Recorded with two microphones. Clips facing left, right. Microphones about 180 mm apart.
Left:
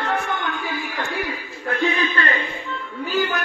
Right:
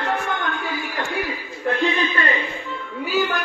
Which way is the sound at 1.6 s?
25° right (ahead or behind).